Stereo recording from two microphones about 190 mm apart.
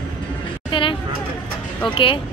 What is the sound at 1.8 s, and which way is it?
Speech, 25° left (ahead or behind).